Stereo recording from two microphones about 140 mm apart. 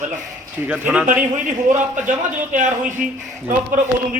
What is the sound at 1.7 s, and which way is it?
A man's voice, 65° right (ahead or behind).